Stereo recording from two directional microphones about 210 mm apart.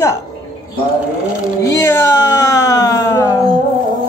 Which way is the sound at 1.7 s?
10° left (ahead or behind).